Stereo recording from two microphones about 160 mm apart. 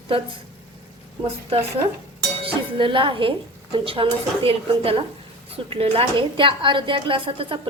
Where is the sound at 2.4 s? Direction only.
35° right (ahead or behind).